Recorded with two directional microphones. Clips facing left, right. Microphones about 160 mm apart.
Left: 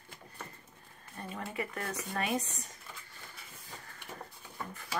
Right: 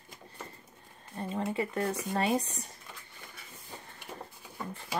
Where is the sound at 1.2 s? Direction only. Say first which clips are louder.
Right 6 dB; 25° right (ahead or behind).